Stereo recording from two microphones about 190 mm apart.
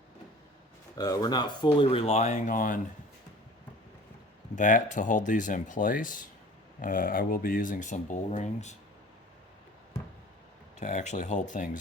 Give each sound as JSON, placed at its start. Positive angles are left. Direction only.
{"t": 0.9, "sound": "speech", "side_deg": 20}
{"t": 4.5, "sound": "speech", "side_deg": 40}
{"t": 10.8, "sound": "speech", "side_deg": 40}